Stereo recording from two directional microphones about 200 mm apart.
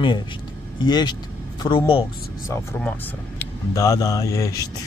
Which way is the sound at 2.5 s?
10° left (ahead or behind).